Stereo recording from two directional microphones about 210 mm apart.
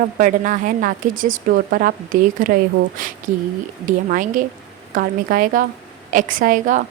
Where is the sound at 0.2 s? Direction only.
40° right (ahead or behind).